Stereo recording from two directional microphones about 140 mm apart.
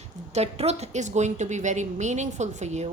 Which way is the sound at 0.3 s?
50° right (ahead or behind).